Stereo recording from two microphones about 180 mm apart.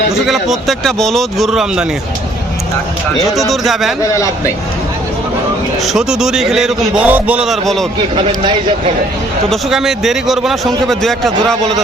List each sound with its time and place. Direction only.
0.3 s a man's voice: centre (ahead or behind)
3.5 s a man's voice: centre (ahead or behind)
4.1 s a man's voice: 15° left (ahead or behind)
5.8 s a man's voice: centre (ahead or behind)
9.5 s a man's voice: centre (ahead or behind)